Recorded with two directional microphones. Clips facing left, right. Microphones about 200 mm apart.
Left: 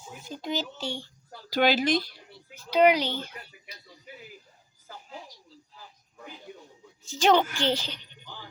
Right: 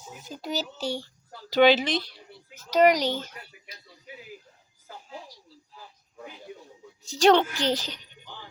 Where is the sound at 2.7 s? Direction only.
40° right (ahead or behind).